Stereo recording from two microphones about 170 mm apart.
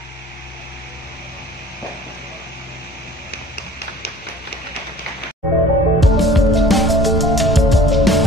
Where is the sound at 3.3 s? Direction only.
75° left (ahead or behind).